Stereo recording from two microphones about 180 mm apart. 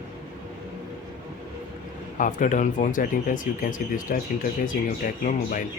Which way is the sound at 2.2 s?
45° left (ahead or behind).